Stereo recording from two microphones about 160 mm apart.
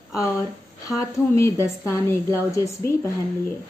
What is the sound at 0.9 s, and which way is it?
A woman's voice, 20° left (ahead or behind).